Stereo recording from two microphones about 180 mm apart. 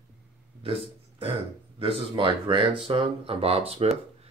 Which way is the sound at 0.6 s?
30° right (ahead or behind).